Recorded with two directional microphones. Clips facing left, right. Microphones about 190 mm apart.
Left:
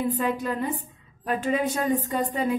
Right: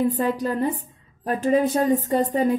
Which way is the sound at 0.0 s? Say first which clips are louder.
Right 4 dB; 40° right (ahead or behind).